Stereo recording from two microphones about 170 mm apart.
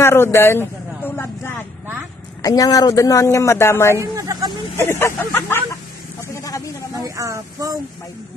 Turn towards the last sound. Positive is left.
turn(degrees=-20)  # may be behind; listen again after turning